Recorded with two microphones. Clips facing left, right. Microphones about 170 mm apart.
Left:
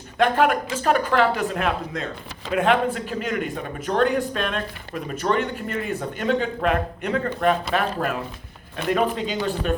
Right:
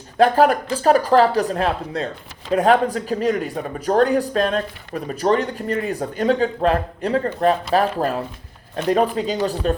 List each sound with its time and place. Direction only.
0.2 s speech: 35° right (ahead or behind)